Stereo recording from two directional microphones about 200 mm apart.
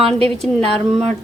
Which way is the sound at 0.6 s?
30° right (ahead or behind).